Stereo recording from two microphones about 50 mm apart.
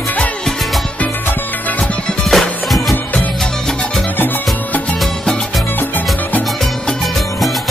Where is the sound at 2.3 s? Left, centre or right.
Centre.